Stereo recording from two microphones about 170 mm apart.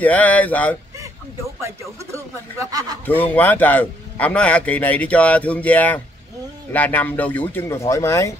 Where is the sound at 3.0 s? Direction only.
10° left (ahead or behind).